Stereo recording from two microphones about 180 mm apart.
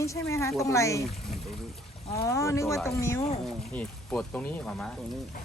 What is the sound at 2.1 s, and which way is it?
Speech, 15° left (ahead or behind).